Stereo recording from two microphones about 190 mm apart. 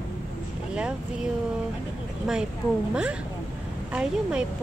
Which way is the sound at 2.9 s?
5° right (ahead or behind).